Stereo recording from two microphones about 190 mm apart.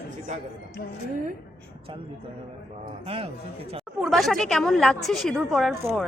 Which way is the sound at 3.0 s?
30° right (ahead or behind).